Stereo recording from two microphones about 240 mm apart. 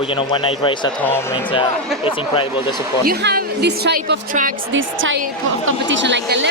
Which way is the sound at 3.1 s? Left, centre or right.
Right.